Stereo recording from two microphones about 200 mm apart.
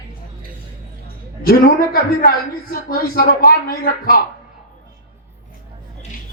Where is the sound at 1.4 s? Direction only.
45° left (ahead or behind).